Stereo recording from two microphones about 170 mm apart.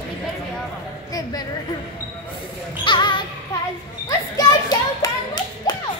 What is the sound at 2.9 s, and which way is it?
Music, 25° left (ahead or behind).